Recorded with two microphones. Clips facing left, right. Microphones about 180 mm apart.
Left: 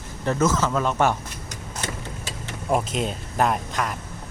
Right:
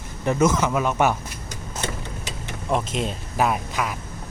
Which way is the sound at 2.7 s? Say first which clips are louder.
Left 1 dB; centre (ahead or behind).